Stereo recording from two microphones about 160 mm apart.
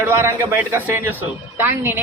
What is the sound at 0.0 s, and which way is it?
A man's voice, 15° right (ahead or behind).